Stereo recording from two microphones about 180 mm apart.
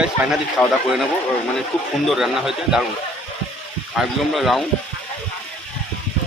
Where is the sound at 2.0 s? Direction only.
Centre (ahead or behind).